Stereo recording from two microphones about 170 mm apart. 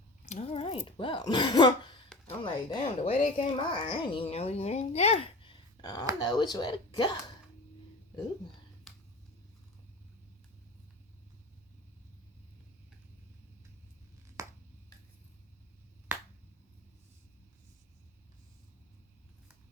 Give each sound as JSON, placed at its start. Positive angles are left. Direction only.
{"t": 0.3, "sound": "a sound", "side_deg": 35}
{"t": 0.9, "sound": "a woman's voice", "side_deg": 30}
{"t": 14.4, "sound": "finger snapping", "side_deg": -20}